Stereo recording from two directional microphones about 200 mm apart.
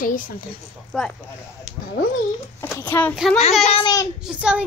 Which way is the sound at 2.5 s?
10° left (ahead or behind).